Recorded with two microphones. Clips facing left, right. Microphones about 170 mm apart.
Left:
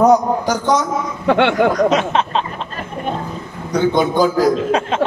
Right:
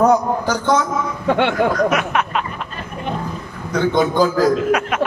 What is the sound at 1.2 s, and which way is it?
Speech, 90° left.